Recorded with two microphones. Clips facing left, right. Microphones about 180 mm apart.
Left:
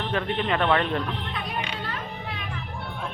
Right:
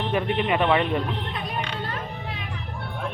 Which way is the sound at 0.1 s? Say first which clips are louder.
Right 3 dB; 10° right (ahead or behind).